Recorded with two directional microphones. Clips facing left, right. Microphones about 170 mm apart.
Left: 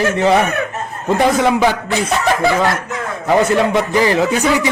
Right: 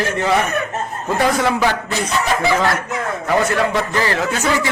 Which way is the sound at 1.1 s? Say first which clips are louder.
Left 4 dB; 20° left (ahead or behind).